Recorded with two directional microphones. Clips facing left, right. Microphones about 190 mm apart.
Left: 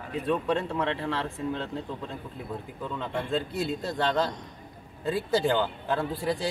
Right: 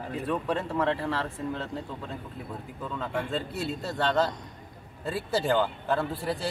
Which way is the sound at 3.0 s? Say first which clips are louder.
Left 1 dB; 5° right (ahead or behind).